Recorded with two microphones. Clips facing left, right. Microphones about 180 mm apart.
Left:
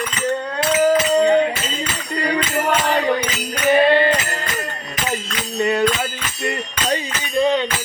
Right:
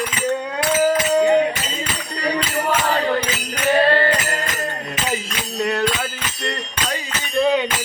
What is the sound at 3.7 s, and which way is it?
Music, 15° left (ahead or behind).